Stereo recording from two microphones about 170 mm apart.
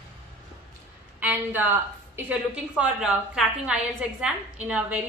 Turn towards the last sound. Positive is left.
turn(degrees=-10)  # may be behind; listen again after turning